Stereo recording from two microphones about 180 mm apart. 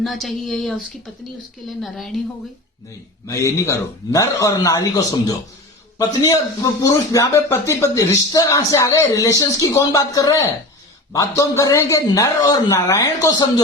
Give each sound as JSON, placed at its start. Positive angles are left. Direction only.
{"t": 0.0, "sound": "a woman's voice", "side_deg": 0}
{"t": 3.2, "sound": "a man's voice", "side_deg": 15}